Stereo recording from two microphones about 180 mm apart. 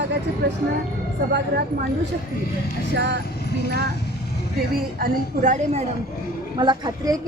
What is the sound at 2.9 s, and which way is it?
Speech, 75° right (ahead or behind).